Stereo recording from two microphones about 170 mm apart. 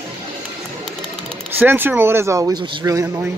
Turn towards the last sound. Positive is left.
turn(degrees=-20)  # may be behind; listen again after turning